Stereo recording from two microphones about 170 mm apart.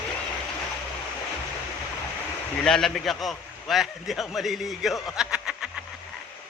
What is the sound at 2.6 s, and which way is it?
A man's voice, centre (ahead or behind).